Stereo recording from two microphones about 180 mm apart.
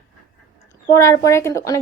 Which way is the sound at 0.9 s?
15° left (ahead or behind).